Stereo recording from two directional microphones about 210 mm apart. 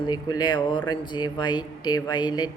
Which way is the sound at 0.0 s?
20° left (ahead or behind).